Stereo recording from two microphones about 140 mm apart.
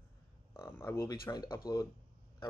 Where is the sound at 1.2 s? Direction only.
30° left (ahead or behind).